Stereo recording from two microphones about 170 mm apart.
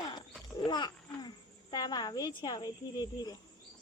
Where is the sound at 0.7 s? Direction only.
25° left (ahead or behind).